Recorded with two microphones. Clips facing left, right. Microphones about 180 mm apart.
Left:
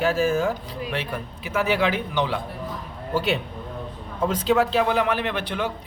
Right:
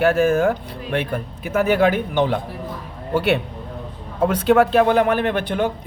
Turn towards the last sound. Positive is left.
turn(degrees=-50)  # may be behind; listen again after turning